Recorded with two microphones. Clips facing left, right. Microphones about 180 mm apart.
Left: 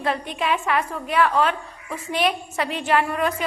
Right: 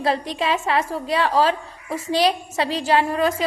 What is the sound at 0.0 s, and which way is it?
A woman's voice, 30° right (ahead or behind).